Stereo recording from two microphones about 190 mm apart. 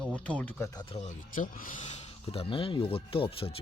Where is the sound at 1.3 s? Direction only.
45° left (ahead or behind).